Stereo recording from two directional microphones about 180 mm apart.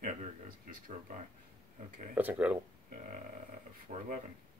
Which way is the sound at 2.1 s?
10° right (ahead or behind).